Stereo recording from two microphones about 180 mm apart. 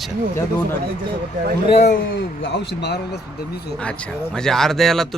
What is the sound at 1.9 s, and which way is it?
A man's voice, 80° left.